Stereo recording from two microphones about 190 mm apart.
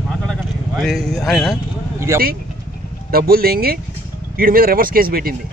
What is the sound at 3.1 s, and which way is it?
Speech, 50° right (ahead or behind).